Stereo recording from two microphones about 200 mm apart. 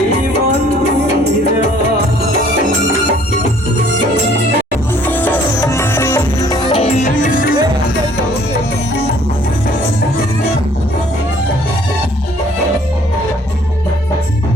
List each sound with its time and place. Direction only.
5.0 s music: 10° left (ahead or behind); by 7.5 s 40° left (ahead or behind)